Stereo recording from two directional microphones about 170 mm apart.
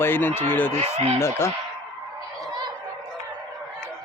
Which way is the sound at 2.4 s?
25° right (ahead or behind).